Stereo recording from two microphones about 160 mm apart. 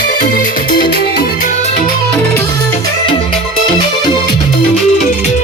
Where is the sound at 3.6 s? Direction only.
30° left (ahead or behind).